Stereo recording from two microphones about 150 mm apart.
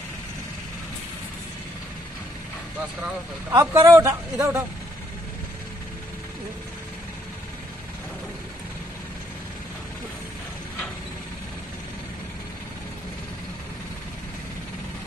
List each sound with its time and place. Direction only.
3.4 s speech: 20° right (ahead or behind)